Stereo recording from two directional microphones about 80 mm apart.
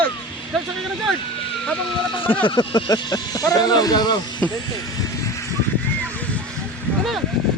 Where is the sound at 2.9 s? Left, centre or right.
Left.